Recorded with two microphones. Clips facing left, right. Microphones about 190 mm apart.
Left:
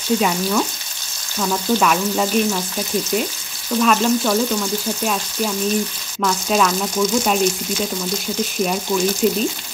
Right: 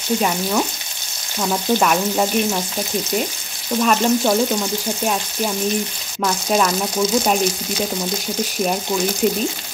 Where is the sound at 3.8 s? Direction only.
15° right (ahead or behind).